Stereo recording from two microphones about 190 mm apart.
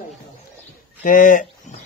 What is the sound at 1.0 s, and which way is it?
Speech, 45° left (ahead or behind).